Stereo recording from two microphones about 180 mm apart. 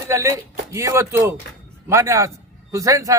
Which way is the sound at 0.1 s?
15° right (ahead or behind).